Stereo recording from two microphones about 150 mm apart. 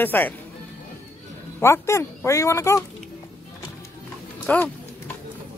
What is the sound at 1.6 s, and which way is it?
Speech, 20° left (ahead or behind).